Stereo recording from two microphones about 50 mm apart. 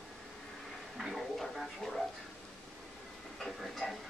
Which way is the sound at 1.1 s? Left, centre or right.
Centre.